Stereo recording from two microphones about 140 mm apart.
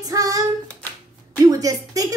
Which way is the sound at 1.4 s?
25° right (ahead or behind).